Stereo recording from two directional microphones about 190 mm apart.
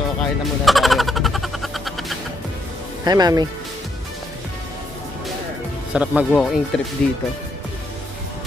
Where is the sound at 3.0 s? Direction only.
20° right (ahead or behind).